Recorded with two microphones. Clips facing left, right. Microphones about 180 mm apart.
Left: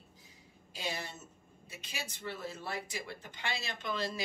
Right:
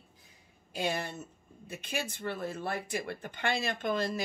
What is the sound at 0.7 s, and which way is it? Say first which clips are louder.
Speech: right 7 dB; 55° right (ahead or behind).